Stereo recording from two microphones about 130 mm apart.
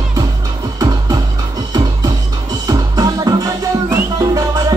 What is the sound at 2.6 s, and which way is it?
Music, 30° right (ahead or behind).